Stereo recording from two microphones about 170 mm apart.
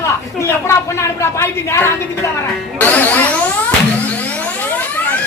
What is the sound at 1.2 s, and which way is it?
Speech, 15° left (ahead or behind).